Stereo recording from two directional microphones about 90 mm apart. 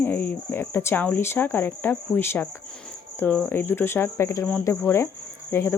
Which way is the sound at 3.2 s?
10° left (ahead or behind).